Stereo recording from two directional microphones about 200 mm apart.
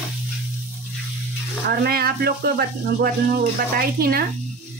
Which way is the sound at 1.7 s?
50° right (ahead or behind).